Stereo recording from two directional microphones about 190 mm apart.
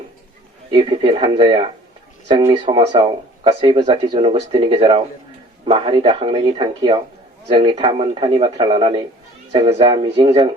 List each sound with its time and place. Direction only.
0.7 s speech: 30° right (ahead or behind)